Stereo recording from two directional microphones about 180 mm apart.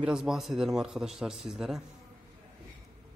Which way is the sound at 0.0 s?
5° right (ahead or behind).